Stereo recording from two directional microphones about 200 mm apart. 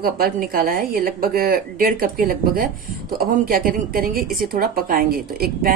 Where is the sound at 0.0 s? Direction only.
45° right (ahead or behind).